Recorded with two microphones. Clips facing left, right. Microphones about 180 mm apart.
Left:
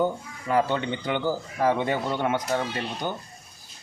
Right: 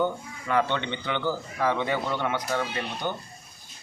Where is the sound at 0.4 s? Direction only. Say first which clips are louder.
Left 2 dB; 35° left (ahead or behind).